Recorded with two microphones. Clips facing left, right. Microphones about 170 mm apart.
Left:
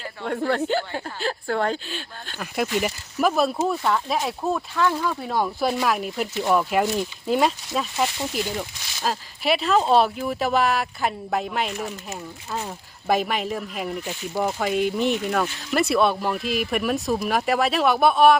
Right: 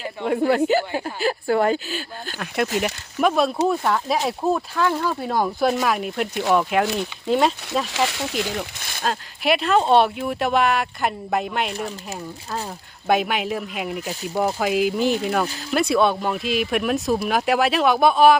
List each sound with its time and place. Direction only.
0.0 s speech: 10° right (ahead or behind)
7.9 s speech: 85° right
8.8 s speech: 55° right (ahead or behind)
9.0 s speech: centre (ahead or behind)
13.1 s speech: centre (ahead or behind)